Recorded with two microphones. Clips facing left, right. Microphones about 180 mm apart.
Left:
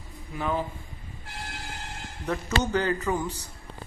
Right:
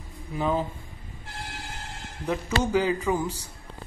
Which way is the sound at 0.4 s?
20° right (ahead or behind).